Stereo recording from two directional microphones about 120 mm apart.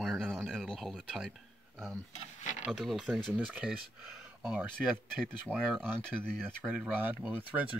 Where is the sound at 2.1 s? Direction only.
90° left.